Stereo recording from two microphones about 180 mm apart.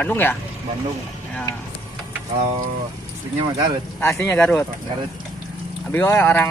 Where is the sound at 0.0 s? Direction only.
10° left (ahead or behind).